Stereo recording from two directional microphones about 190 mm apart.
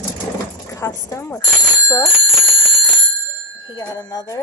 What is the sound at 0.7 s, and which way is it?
Speech, 15° left (ahead or behind).